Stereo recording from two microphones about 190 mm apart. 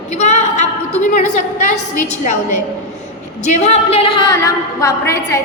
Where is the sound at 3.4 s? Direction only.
35° left (ahead or behind).